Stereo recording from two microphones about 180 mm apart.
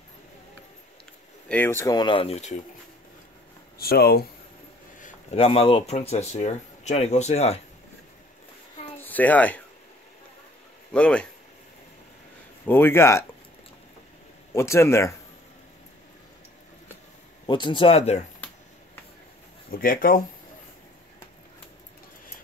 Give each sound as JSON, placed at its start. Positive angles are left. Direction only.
{"t": 1.5, "sound": "speech", "side_deg": 10}
{"t": 3.7, "sound": "speech", "side_deg": 60}
{"t": 5.0, "sound": "speech", "side_deg": 35}
{"t": 8.9, "sound": "a sound", "side_deg": 10}
{"t": 10.9, "sound": "speech", "side_deg": 5}
{"t": 12.6, "sound": "speech", "side_deg": 10}
{"t": 14.5, "sound": "speech", "side_deg": 15}
{"t": 17.5, "sound": "speech", "side_deg": 25}
{"t": 19.7, "sound": "speech", "side_deg": 50}